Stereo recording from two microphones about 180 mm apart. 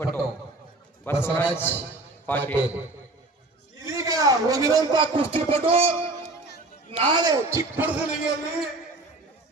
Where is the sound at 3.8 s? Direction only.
20° right (ahead or behind).